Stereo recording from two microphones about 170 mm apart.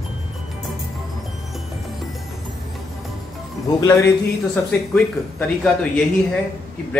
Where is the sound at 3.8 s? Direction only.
15° left (ahead or behind).